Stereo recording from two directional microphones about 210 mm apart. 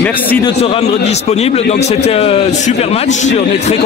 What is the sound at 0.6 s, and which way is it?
A man's voice, 30° left (ahead or behind).